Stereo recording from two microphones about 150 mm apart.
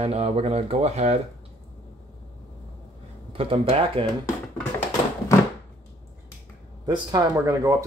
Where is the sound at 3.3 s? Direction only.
40° right (ahead or behind).